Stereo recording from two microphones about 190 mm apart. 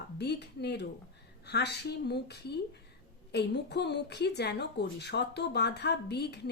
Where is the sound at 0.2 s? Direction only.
60° left (ahead or behind).